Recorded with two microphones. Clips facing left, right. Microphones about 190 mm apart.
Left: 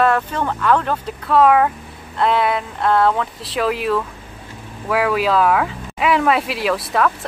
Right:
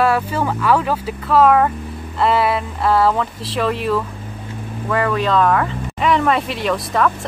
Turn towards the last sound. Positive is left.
turn(degrees=5)  # may be behind; listen again after turning